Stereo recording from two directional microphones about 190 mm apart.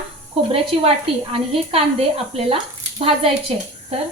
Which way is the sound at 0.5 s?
30° right (ahead or behind).